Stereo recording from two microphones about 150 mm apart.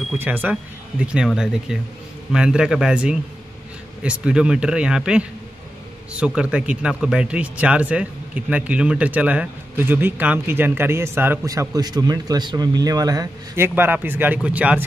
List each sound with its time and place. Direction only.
0.2 s speech: 10° right (ahead or behind)